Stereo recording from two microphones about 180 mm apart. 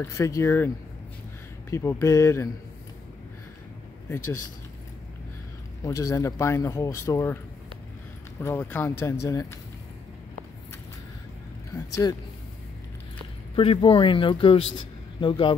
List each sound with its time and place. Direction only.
0.0 s speech: 15° left (ahead or behind)
1.7 s speech: 15° left (ahead or behind)
5.9 s speech: 15° left (ahead or behind)
8.4 s speech: 10° left (ahead or behind)
11.7 s speech: 20° left (ahead or behind)
13.6 s speech: 30° left (ahead or behind)